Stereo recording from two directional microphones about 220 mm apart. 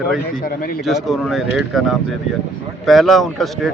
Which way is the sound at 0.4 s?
40° left (ahead or behind).